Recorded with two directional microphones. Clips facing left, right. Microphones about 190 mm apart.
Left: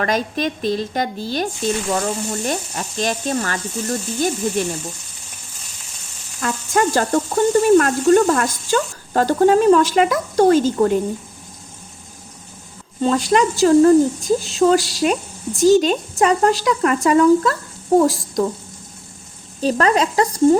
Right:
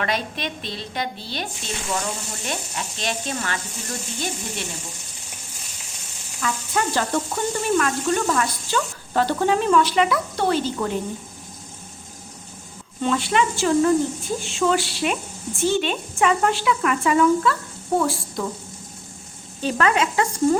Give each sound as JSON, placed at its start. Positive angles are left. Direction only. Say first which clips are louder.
{"t": 0.0, "sound": "speech", "louder": "left 6 dB", "side_deg": 45}
{"t": 6.4, "sound": "speech", "louder": "left 6 dB", "side_deg": 45}
{"t": 13.0, "sound": "speech", "louder": "left 5 dB", "side_deg": 40}
{"t": 19.6, "sound": "speech", "louder": "left 4 dB", "side_deg": 35}